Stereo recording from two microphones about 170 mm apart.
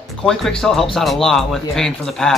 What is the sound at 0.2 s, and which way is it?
Speech, 5° left (ahead or behind).